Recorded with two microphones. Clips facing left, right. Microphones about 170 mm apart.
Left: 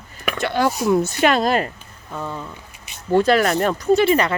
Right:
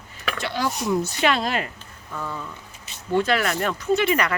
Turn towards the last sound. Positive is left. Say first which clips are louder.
# left 5 dB
turn(degrees=30)  # may be behind; listen again after turning